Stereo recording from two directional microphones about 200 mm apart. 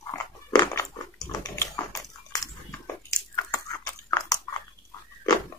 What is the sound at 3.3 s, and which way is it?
Chewing, 15° left (ahead or behind).